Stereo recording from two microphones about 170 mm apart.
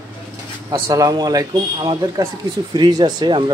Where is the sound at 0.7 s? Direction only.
20° right (ahead or behind).